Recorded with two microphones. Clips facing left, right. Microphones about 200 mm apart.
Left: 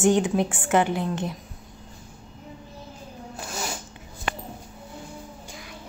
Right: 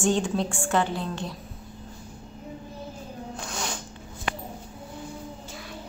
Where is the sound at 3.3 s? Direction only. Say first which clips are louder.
Left 2 dB; 5° left (ahead or behind).